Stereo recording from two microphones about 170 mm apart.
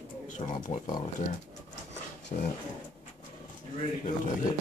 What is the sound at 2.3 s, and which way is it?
Speech, 50° left (ahead or behind).